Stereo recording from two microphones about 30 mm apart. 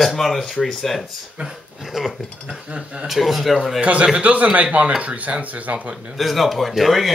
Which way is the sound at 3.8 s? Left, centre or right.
Right.